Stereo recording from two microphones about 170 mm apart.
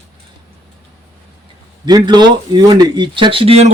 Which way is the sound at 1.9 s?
25° right (ahead or behind).